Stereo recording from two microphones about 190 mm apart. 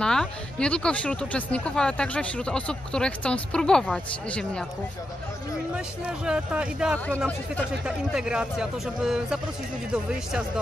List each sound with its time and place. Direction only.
0.0 s speech: 5° left (ahead or behind)
6.0 s speech: 5° right (ahead or behind)